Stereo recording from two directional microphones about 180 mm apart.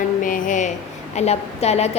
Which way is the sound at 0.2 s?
50° left (ahead or behind).